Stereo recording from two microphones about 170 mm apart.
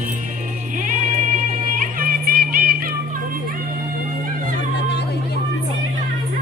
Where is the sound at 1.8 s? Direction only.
55° right (ahead or behind).